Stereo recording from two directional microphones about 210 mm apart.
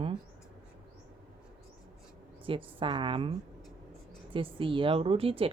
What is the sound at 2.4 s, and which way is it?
Speech, 25° right (ahead or behind).